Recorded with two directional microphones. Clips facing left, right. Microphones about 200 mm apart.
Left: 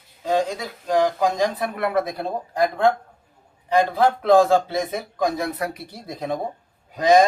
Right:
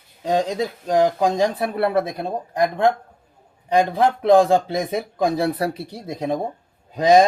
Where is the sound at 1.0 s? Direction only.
30° right (ahead or behind).